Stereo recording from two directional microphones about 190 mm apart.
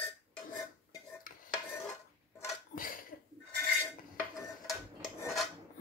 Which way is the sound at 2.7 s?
45° left (ahead or behind).